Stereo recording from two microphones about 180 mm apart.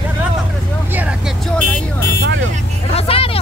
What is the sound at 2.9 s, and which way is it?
Vehicle, 30° left (ahead or behind).